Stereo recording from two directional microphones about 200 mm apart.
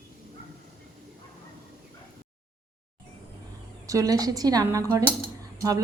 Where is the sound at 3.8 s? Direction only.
15° right (ahead or behind).